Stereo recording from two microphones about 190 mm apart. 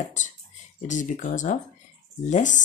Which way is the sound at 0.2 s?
40° left (ahead or behind).